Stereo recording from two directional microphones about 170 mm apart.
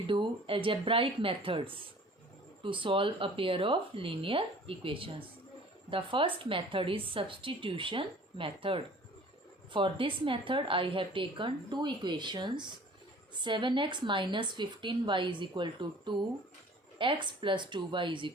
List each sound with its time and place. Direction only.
0.1 s a woman's voice: 30° right (ahead or behind)